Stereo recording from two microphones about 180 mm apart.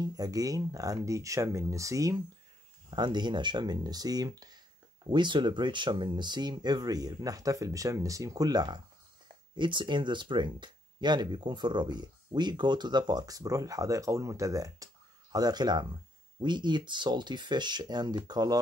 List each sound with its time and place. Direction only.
0.0 s speech: 20° right (ahead or behind)